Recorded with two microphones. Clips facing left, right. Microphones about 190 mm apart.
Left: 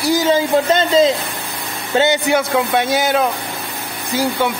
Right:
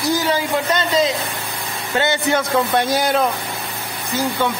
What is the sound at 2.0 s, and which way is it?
Speech, 15° left (ahead or behind).